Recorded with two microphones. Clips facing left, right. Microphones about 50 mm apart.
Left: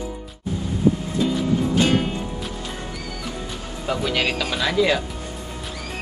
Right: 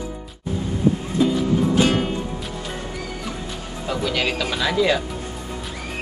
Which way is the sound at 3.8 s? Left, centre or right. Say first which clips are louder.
Even; centre.